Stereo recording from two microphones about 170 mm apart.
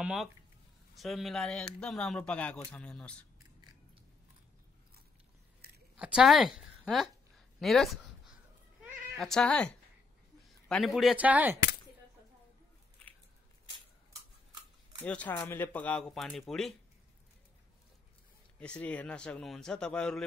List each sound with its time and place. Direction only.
0.0 s speech: 5° right (ahead or behind)
5.6 s a sound: 65° right (ahead or behind)
5.9 s a woman's voice: 5° right (ahead or behind)
9.2 s speech: 5° left (ahead or behind)
15.0 s speech: 10° left (ahead or behind)
18.6 s speech: 5° left (ahead or behind)